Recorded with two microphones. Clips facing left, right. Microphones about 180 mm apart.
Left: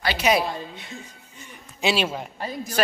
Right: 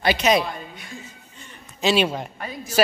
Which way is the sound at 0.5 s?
25° left (ahead or behind).